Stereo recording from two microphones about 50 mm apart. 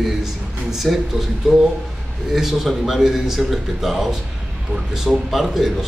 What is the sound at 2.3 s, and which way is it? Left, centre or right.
A man's voice, centre.